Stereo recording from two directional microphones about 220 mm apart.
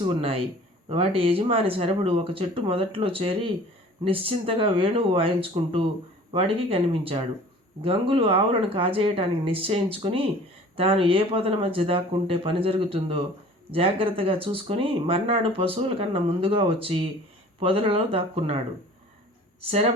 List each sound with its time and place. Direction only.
0.0 s speech: 25° right (ahead or behind)